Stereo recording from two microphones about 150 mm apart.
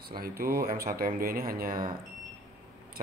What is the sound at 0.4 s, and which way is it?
Speech, 85° right.